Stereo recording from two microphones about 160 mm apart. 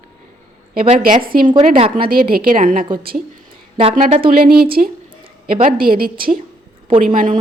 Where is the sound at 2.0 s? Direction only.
70° right (ahead or behind).